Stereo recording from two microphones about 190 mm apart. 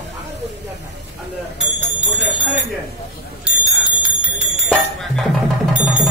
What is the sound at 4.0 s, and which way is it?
Bell, 5° right (ahead or behind).